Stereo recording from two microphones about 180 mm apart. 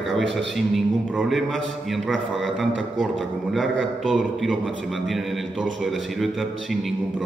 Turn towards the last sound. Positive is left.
turn(degrees=0)  # may be behind; listen again after turning